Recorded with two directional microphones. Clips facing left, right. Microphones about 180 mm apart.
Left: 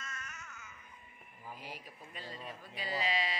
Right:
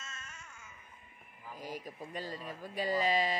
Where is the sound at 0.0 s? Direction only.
25° right (ahead or behind).